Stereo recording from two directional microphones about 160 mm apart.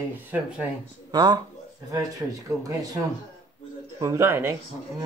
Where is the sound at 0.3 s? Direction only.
10° right (ahead or behind).